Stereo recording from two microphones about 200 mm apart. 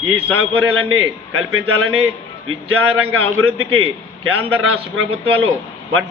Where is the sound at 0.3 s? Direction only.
90° right.